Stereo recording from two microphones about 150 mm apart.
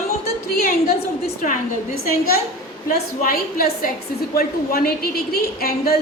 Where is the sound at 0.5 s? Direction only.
90° left.